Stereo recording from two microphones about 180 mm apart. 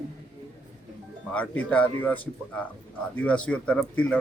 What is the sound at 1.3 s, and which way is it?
Speech, 10° left (ahead or behind).